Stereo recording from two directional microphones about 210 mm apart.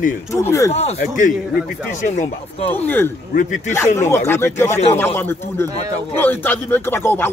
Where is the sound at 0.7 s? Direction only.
30° left (ahead or behind).